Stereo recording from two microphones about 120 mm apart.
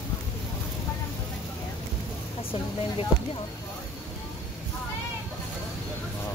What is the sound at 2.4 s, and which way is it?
Speech, 50° left (ahead or behind).